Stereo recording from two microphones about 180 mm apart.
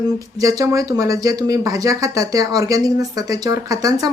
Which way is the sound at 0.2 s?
20° right (ahead or behind).